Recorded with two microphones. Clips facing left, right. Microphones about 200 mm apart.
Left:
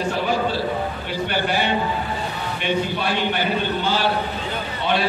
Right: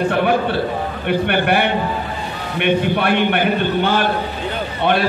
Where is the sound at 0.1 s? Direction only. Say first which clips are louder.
Right 5 dB; 60° right (ahead or behind).